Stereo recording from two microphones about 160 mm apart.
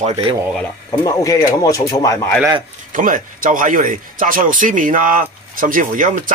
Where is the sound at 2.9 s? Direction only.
55° right (ahead or behind).